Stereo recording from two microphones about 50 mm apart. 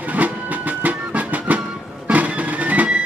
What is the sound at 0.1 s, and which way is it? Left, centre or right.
Music, right.